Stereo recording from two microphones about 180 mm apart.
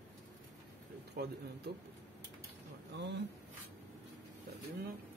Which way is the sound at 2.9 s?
75° right (ahead or behind).